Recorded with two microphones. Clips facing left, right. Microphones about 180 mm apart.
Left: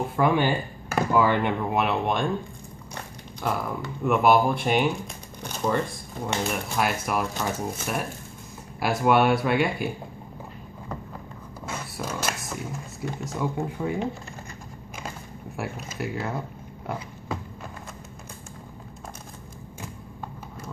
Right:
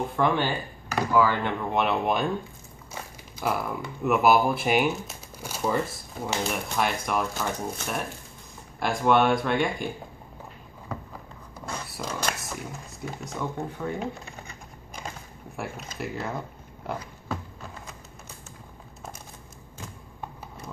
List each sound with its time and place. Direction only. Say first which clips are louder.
0.1 s speech: left 4 dB; 10° left (ahead or behind)
1.1 s speech: left 1 dB; 20° left (ahead or behind)
1.7 s speech: right 4 dB; centre (ahead or behind)
11.6 s a sound: left 1 dB; 5° left (ahead or behind)
13.6 s speech: left 3 dB; 15° left (ahead or behind)
15.5 s speech: left 2 dB; centre (ahead or behind)